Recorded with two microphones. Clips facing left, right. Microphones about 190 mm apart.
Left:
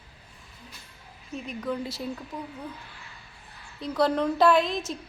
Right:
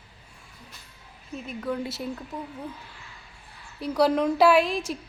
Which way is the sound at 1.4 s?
5° right (ahead or behind).